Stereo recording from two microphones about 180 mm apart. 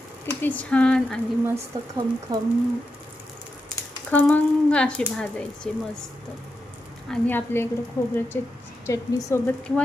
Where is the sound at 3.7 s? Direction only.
10° left (ahead or behind).